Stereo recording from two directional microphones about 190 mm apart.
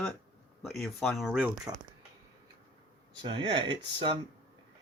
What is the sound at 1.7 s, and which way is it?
Speech, 20° right (ahead or behind).